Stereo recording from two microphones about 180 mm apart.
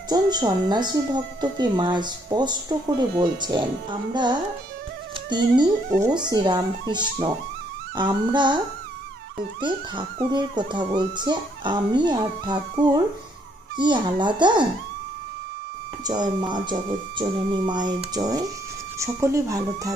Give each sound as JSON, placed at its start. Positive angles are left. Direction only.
{"t": 0.1, "sound": "speech", "side_deg": -20}
{"t": 6.0, "sound": "speech", "side_deg": -25}
{"t": 9.6, "sound": "speech", "side_deg": -25}
{"t": 16.1, "sound": "speech", "side_deg": -25}